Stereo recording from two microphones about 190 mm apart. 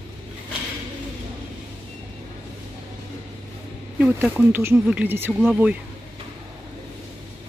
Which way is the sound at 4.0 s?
10° right (ahead or behind).